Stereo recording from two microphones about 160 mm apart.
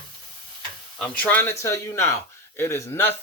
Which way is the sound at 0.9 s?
10° left (ahead or behind).